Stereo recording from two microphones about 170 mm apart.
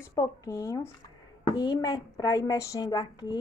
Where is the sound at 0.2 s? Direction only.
20° left (ahead or behind).